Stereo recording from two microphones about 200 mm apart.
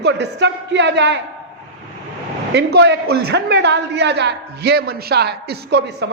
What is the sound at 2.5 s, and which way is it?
A woman's voice, 60° right (ahead or behind).